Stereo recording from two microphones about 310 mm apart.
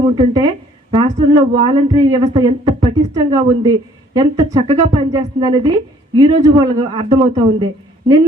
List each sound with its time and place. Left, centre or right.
0.0 s a woman's voice: centre